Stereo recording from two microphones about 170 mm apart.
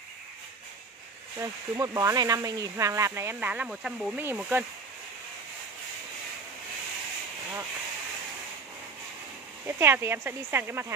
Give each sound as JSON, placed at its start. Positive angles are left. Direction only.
{"t": 1.4, "sound": "speech", "side_deg": -20}
{"t": 9.7, "sound": "speech", "side_deg": -15}